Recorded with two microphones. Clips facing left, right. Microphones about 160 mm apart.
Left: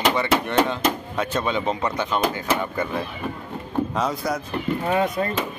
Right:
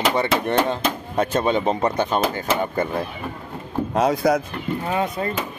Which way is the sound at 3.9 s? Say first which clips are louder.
Right 6 dB; 70° right (ahead or behind).